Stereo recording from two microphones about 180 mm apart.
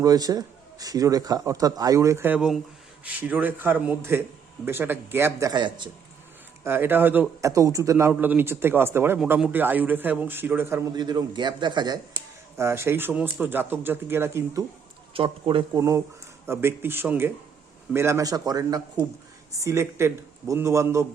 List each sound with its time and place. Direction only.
0.0 s a man's voice: 20° right (ahead or behind)
6.7 s speech: 10° right (ahead or behind)
10.9 s a man's voice: 25° right (ahead or behind)
15.1 s a man's voice: 30° right (ahead or behind)
15.8 s a man's voice: 15° right (ahead or behind)